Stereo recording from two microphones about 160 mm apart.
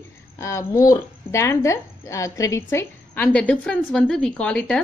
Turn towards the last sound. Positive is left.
turn(degrees=5)  # may be behind; listen again after turning